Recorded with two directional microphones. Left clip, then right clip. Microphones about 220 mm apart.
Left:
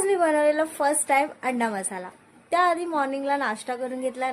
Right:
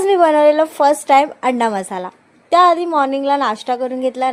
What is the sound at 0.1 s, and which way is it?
A woman's voice, 30° right (ahead or behind).